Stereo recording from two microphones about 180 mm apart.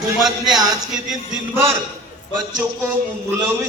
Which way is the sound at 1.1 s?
10° right (ahead or behind).